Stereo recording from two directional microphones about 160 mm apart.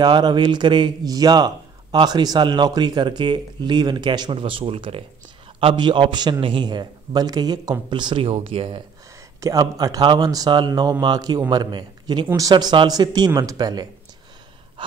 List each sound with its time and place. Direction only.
0.0 s speech: 25° right (ahead or behind)
9.4 s a man's voice: 20° right (ahead or behind)
14.8 s gasp: 30° right (ahead or behind)